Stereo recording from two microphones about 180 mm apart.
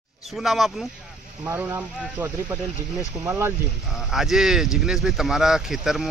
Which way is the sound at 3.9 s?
Centre (ahead or behind).